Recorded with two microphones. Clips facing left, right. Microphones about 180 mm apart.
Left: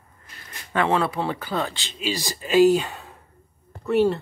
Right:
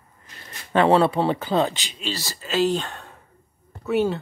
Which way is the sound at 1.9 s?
10° left (ahead or behind).